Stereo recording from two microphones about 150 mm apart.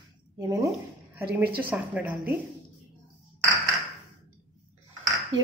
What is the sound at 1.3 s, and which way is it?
A woman's voice, 10° right (ahead or behind).